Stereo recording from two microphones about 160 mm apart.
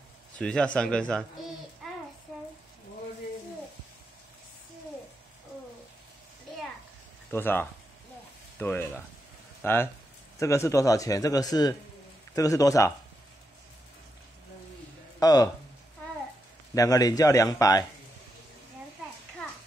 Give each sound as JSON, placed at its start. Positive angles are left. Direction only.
{"t": 0.4, "sound": "a man's voice", "side_deg": 5}
{"t": 7.2, "sound": "a man's voice", "side_deg": 10}
{"t": 15.1, "sound": "speech", "side_deg": 25}
{"t": 16.7, "sound": "speech", "side_deg": 20}